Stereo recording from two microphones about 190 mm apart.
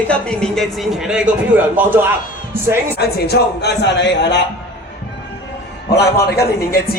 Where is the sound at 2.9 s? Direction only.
60° left (ahead or behind).